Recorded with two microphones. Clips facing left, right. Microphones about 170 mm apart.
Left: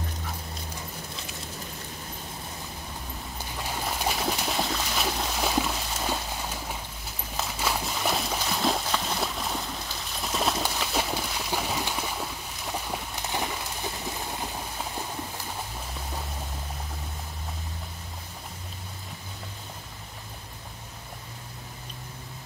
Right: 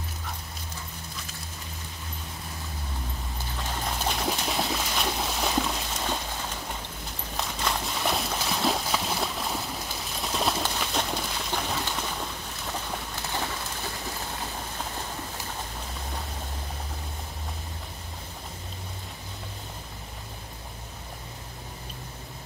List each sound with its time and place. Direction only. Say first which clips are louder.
3.6 s splash: left 1 dB; 10° left (ahead or behind)
7.3 s horse: left 1 dB; 5° left (ahead or behind)
10.2 s pigeon: even; centre (ahead or behind)
13.1 s a sound: left 1 dB; 15° left (ahead or behind)